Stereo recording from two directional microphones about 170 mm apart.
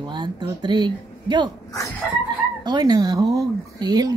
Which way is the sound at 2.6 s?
25° right (ahead or behind).